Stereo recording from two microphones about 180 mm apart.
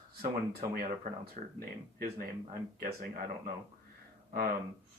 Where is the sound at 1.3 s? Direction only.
55° right (ahead or behind).